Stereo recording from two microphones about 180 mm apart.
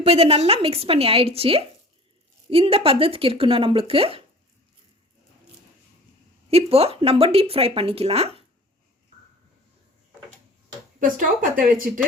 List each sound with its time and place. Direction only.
0.0 s speech: 35° right (ahead or behind)
6.5 s speech: 35° right (ahead or behind)
11.0 s speech: 45° right (ahead or behind)